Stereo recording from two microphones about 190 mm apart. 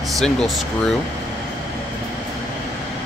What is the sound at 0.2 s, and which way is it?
Speech, centre (ahead or behind).